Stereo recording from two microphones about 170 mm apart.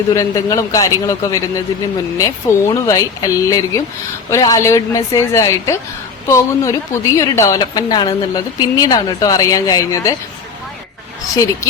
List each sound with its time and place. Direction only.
0.1 s a woman's voice: 20° left (ahead or behind)